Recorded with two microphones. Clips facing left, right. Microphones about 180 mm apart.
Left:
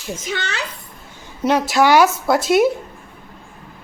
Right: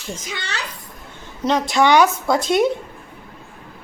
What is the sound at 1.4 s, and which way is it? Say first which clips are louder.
A woman's voice: left 2 dB; 5° left (ahead or behind).